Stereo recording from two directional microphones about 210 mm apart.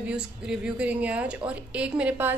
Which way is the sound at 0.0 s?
5° right (ahead or behind).